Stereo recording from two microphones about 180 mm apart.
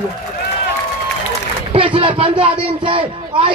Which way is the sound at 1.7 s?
30° right (ahead or behind).